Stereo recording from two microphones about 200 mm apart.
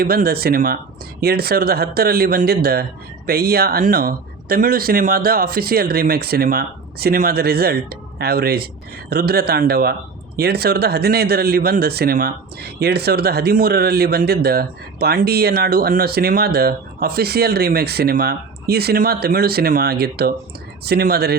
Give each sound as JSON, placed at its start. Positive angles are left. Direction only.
{"t": 0.0, "sound": "speech", "side_deg": -50}